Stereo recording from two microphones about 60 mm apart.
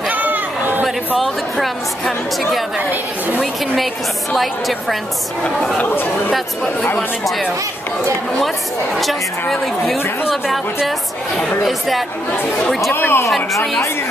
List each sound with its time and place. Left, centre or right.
0.1 s chatter: right
0.8 s a woman's voice: centre
4.4 s a woman's voice: centre
6.3 s a woman's voice: centre
8.9 s a woman's voice: centre
11.3 s a woman's voice: centre
12.9 s speech: left